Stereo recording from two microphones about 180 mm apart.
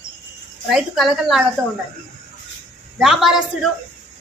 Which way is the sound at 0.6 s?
Centre (ahead or behind).